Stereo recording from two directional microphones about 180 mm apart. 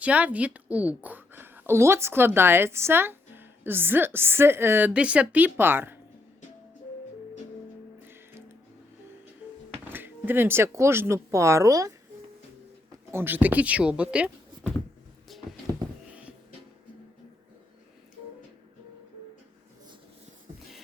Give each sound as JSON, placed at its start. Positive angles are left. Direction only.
{"t": 0.0, "sound": "a woman's voice", "side_deg": -10}
{"t": 8.0, "sound": "music", "side_deg": -15}
{"t": 9.9, "sound": "speech", "side_deg": -10}
{"t": 13.1, "sound": "speech", "side_deg": -10}
{"t": 15.3, "sound": "a sound", "side_deg": 0}
{"t": 16.0, "sound": "music", "side_deg": -5}